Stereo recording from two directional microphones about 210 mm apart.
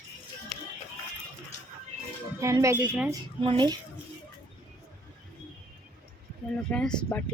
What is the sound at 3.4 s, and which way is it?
Speech, 20° right (ahead or behind).